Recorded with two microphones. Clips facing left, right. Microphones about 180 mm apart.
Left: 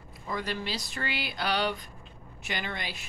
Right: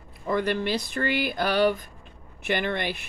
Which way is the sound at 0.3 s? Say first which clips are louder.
Right 9 dB; 60° right (ahead or behind).